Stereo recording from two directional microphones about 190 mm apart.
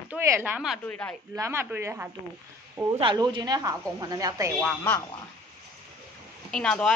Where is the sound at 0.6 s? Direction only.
5° left (ahead or behind).